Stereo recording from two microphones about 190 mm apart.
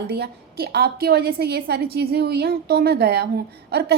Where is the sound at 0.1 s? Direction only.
55° right (ahead or behind).